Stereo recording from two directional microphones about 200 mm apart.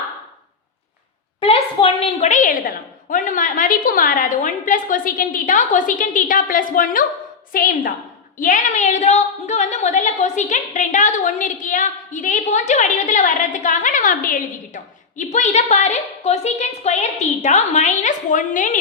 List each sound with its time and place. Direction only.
1.4 s a woman's voice: 30° left (ahead or behind)